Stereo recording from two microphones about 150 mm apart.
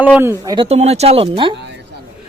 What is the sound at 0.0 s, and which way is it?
Speech, 10° right (ahead or behind).